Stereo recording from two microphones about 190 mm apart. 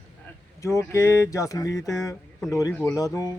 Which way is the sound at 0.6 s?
15° left (ahead or behind).